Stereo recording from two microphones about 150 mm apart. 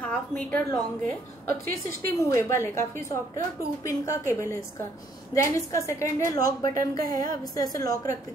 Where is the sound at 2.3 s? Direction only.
20° left (ahead or behind).